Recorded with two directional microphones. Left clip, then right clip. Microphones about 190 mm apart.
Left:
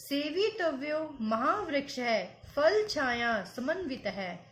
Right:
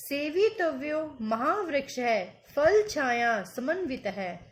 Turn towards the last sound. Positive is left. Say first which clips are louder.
# right 3 dB
turn(degrees=-35)  # may be behind; listen again after turning